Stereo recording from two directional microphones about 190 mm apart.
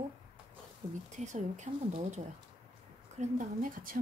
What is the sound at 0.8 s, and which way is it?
Speech, 20° right (ahead or behind).